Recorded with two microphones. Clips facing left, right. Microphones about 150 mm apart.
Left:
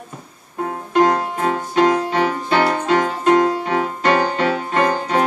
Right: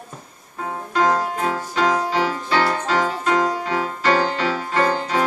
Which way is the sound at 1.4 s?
20° left (ahead or behind).